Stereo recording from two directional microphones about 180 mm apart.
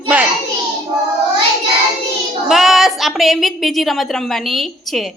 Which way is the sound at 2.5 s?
Centre (ahead or behind).